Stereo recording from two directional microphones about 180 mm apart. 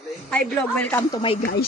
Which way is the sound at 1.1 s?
30° left (ahead or behind).